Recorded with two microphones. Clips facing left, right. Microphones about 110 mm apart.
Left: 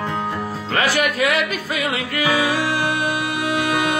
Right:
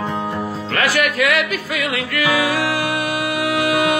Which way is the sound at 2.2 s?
20° left (ahead or behind).